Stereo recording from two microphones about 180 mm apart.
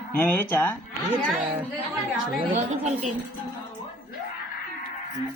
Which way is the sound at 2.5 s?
40° right (ahead or behind).